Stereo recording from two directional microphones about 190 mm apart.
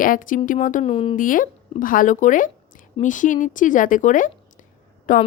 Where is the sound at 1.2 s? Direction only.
45° left (ahead or behind).